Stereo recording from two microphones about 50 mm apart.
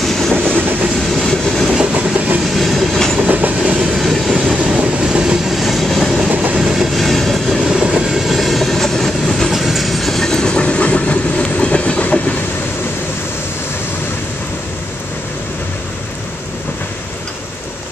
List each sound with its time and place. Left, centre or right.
0.0 s train: centre
0.6 s train: right
1.2 s train: centre
2.0 s train: right
2.5 s train: centre
3.3 s train: right
3.9 s vehicle: centre
4.6 s train: right
5.5 s train: centre
7.6 s train: centre
8.1 s train: centre
9.5 s train: centre; by 12.4 s left